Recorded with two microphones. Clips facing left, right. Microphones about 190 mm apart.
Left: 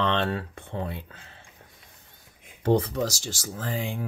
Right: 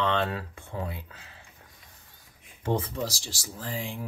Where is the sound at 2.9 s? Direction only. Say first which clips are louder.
Left 4 dB; 55° left (ahead or behind).